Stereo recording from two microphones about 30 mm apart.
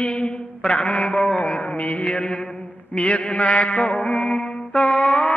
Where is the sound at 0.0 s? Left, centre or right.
Left.